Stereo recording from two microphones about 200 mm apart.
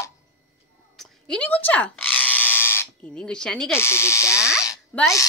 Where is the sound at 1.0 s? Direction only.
Centre (ahead or behind).